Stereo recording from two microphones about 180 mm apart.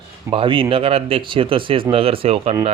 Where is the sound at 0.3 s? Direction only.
30° right (ahead or behind).